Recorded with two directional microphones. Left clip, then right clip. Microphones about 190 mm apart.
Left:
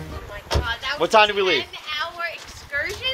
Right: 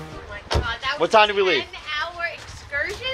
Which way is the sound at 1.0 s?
15° left (ahead or behind).